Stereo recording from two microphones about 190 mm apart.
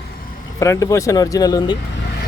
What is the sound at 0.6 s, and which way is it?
Speech, 20° left (ahead or behind).